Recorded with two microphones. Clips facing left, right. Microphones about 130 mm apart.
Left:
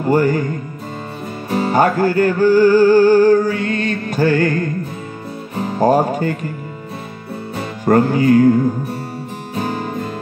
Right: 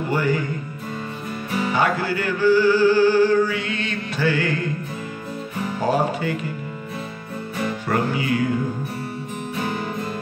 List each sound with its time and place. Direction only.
0.0 s music: 45° left (ahead or behind)
1.5 s music: 45° left (ahead or behind)
7.8 s music: 45° left (ahead or behind)